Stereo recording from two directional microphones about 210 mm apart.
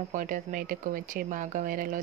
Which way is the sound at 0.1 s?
40° right (ahead or behind).